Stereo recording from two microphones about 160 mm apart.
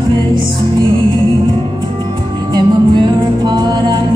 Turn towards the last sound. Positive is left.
turn(degrees=-30)  # may be behind; listen again after turning